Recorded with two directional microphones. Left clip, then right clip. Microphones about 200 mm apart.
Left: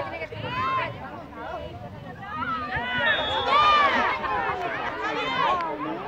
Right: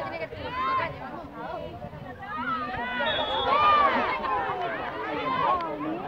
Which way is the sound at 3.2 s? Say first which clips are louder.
Left 1 dB; 5° left (ahead or behind).